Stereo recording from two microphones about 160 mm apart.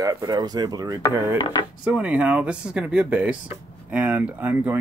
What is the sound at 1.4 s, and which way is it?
Speech, 30° left (ahead or behind).